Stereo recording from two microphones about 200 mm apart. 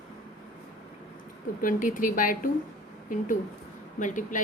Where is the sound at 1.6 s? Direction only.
40° left (ahead or behind).